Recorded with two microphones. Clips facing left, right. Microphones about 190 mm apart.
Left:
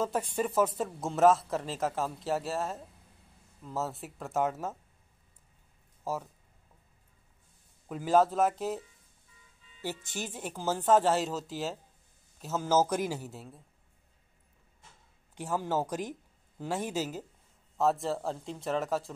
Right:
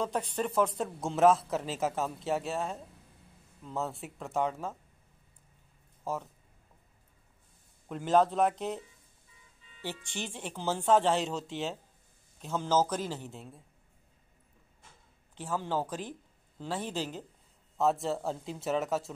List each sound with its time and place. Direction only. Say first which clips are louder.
0.0 s speech: left 1 dB; 5° left (ahead or behind)
6.0 s speech: left 1 dB; 5° left (ahead or behind)
7.9 s speech: left 1 dB; 5° left (ahead or behind)
10.1 s a man's voice: left 1 dB; 5° left (ahead or behind)
15.3 s speech: left 2 dB; 10° left (ahead or behind)